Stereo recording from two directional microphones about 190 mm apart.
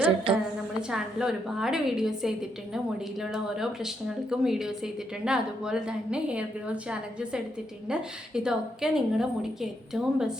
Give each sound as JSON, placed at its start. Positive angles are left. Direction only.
{"t": 0.3, "sound": "a woman's voice", "side_deg": -25}
{"t": 0.8, "sound": "a woman's voice", "side_deg": -5}